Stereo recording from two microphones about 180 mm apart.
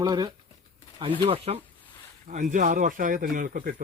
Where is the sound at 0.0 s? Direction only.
20° right (ahead or behind).